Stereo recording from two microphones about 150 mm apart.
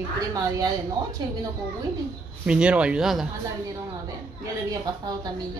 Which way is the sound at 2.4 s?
5° right (ahead or behind).